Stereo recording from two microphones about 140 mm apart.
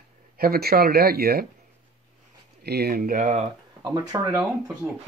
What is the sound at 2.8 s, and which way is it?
Speech, 90° right.